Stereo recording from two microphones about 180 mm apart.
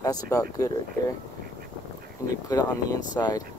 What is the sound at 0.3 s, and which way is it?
Speech, 20° left (ahead or behind).